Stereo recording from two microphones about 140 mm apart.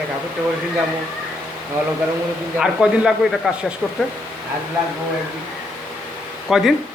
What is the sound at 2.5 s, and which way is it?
Speech, 5° right (ahead or behind).